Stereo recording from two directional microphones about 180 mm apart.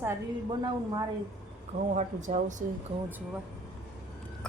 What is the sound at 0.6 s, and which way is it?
Speech, 20° right (ahead or behind).